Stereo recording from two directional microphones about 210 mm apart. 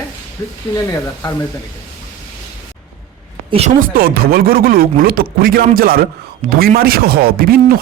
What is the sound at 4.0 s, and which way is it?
A man's voice, 45° right (ahead or behind).